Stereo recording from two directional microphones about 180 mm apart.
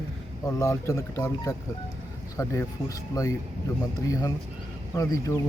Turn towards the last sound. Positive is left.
turn(degrees=20)  # may be behind; listen again after turning